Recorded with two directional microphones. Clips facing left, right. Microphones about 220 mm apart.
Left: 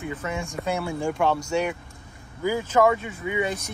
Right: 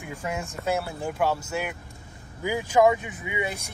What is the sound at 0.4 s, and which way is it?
Speech, 5° right (ahead or behind).